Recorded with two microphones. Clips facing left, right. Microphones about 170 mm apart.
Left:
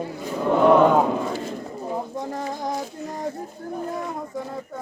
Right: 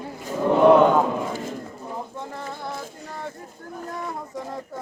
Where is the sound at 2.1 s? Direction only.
40° left (ahead or behind).